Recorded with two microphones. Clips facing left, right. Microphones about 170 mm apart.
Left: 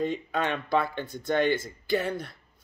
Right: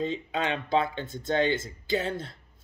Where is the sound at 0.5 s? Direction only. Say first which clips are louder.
Right 2 dB; 20° right (ahead or behind).